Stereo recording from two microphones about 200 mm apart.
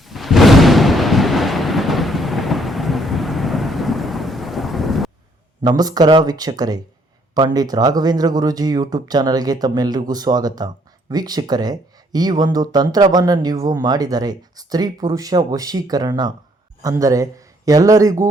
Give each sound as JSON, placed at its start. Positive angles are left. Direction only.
{"t": 0.0, "sound": "thunder", "side_deg": 0}
{"t": 5.6, "sound": "speech", "side_deg": -20}